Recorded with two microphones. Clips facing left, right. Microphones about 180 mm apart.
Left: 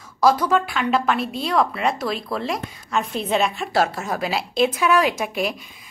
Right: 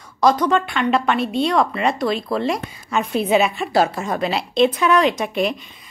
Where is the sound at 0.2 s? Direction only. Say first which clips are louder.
Right 1 dB; 5° left (ahead or behind).